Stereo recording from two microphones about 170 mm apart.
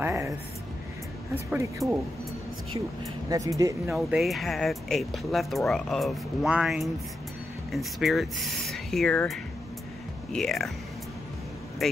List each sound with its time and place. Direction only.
0.0 s a sound: 15° right (ahead or behind)
1.3 s speech: 15° right (ahead or behind)
3.3 s speech: 20° right (ahead or behind)
3.9 s speech: centre (ahead or behind)
11.8 s speech: centre (ahead or behind)